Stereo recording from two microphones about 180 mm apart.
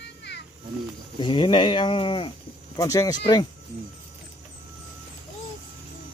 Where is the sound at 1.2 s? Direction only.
25° left (ahead or behind).